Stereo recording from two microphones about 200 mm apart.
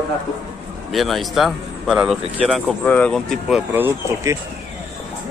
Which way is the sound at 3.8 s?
15° right (ahead or behind).